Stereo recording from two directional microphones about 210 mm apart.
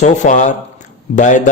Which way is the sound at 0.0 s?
35° left (ahead or behind).